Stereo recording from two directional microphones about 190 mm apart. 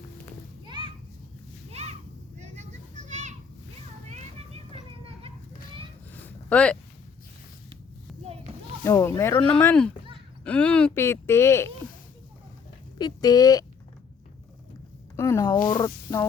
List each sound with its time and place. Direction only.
0.6 s children playing: 25° right (ahead or behind)
1.7 s a sound: 35° right (ahead or behind)
2.4 s children playing: 40° right (ahead or behind)
6.1 s a sound: 10° left (ahead or behind)
8.8 s speech: 15° left (ahead or behind)
13.0 s speech: 20° left (ahead or behind)
15.1 s a sound: 15° left (ahead or behind)
15.5 s speech: 45° left (ahead or behind)
15.8 s music: 15° left (ahead or behind)